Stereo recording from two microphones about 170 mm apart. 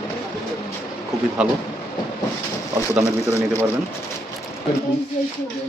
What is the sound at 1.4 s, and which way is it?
Speech, 5° right (ahead or behind).